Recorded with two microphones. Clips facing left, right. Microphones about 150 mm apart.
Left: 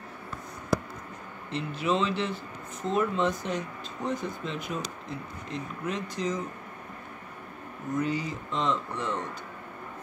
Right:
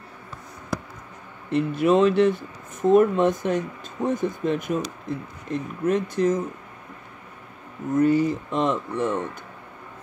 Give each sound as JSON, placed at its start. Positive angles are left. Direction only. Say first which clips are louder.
{"t": 1.5, "sound": "speech", "louder": "right 9 dB", "side_deg": -55}
{"t": 7.9, "sound": "speech", "louder": "right 10 dB", "side_deg": -50}